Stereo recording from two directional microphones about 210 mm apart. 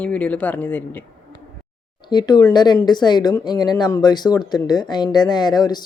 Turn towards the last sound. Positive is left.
turn(degrees=20)  # may be behind; listen again after turning